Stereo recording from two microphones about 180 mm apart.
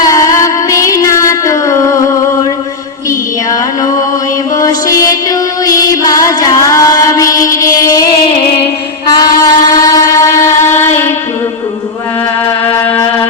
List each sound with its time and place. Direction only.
0.0 s music: 20° left (ahead or behind)
4.6 s mantra: 20° left (ahead or behind)
5.6 s music: 20° left (ahead or behind)
9.0 s train: 20° left (ahead or behind)
12.7 s music: 15° left (ahead or behind)